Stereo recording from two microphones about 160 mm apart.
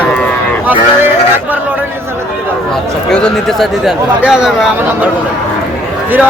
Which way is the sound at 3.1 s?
Centre (ahead or behind).